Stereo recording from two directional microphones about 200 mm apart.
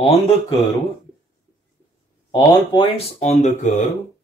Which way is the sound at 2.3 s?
25° left (ahead or behind).